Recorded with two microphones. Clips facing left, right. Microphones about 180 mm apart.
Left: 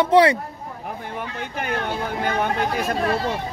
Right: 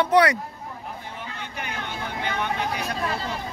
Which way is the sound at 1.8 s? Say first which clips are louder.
Left 6 dB; 40° left (ahead or behind).